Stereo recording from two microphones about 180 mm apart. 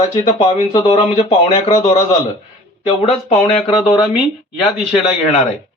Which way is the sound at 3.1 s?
35° left (ahead or behind).